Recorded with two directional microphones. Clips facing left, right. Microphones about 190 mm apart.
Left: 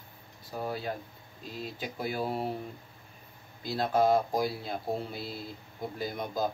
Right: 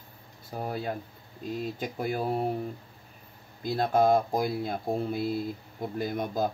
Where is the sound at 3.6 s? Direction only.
50° right (ahead or behind).